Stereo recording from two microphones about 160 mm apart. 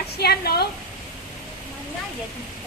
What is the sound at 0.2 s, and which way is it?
Speech, 80° left.